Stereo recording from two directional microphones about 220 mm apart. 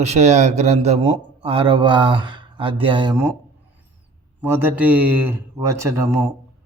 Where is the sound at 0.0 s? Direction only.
30° right (ahead or behind).